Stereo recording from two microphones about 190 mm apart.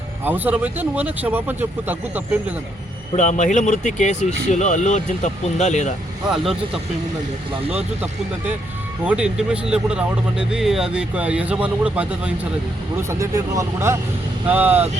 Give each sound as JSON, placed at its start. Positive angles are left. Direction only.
{"t": 0.3, "sound": "speech", "side_deg": -10}
{"t": 3.2, "sound": "speech", "side_deg": 40}
{"t": 6.2, "sound": "speech", "side_deg": 0}
{"t": 9.0, "sound": "speech", "side_deg": -5}